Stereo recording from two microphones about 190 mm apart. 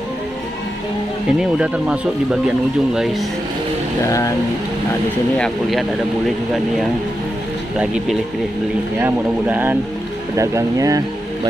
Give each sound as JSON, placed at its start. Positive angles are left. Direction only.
{"t": 2.4, "sound": "speech", "side_deg": 0}
{"t": 4.0, "sound": "speech", "side_deg": 15}
{"t": 5.4, "sound": "speech", "side_deg": 0}
{"t": 7.8, "sound": "speech", "side_deg": -5}